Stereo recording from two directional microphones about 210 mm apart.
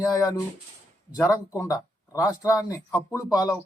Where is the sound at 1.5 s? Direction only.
15° left (ahead or behind).